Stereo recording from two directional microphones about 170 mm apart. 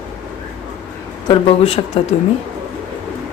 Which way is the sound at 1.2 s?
35° left (ahead or behind).